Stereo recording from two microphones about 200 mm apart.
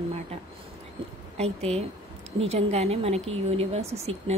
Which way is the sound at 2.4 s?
30° right (ahead or behind).